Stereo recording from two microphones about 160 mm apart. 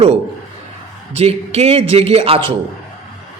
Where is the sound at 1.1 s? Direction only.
40° right (ahead or behind).